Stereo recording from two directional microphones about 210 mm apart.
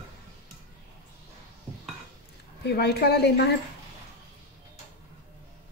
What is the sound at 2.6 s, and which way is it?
Speech, 50° left (ahead or behind).